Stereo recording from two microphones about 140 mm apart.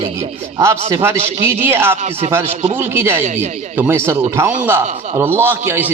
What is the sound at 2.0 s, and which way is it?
Speech, 50° right (ahead or behind).